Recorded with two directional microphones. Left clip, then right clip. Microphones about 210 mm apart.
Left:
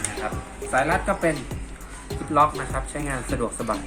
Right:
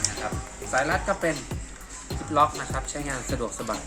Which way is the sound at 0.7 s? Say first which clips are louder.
Left 3 dB; 10° right (ahead or behind).